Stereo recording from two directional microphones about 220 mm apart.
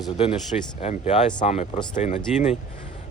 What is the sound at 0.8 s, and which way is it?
Speech, 30° left (ahead or behind).